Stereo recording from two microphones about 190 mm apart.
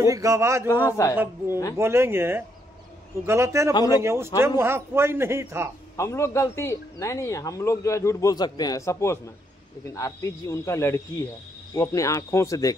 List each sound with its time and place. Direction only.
0.0 s a man's voice: 15° right (ahead or behind)
0.8 s speech: 15° left (ahead or behind)
1.1 s a man's voice: 10° right (ahead or behind)
5.9 s speech: 15° left (ahead or behind)